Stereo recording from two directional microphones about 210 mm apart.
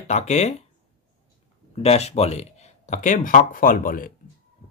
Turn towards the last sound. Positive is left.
turn(degrees=40)  # may be behind; listen again after turning